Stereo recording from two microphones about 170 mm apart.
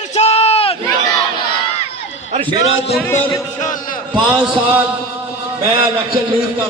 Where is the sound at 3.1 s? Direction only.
15° left (ahead or behind).